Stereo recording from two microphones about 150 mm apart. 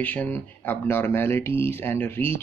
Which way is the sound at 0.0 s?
10° left (ahead or behind).